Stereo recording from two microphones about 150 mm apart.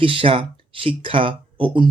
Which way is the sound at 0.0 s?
35° right (ahead or behind).